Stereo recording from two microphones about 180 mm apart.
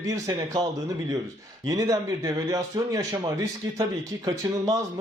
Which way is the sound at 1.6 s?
20° right (ahead or behind).